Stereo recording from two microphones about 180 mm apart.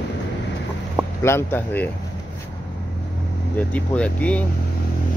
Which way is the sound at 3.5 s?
10° left (ahead or behind).